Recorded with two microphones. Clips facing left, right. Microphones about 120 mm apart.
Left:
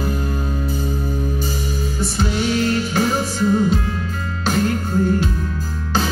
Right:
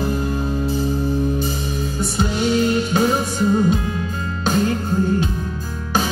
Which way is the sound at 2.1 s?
15° right (ahead or behind).